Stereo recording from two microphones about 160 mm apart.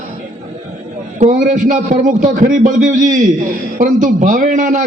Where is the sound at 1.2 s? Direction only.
50° right (ahead or behind).